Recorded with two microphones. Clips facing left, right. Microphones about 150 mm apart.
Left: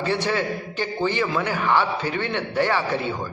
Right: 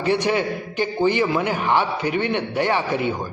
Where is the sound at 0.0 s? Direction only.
15° right (ahead or behind).